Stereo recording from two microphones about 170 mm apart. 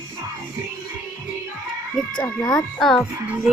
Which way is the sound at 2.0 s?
Centre (ahead or behind).